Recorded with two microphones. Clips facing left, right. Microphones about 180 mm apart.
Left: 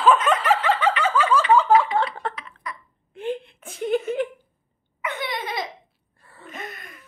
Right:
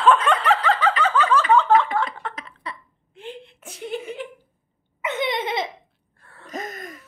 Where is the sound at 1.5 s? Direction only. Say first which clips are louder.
Left 1 dB; 5° left (ahead or behind).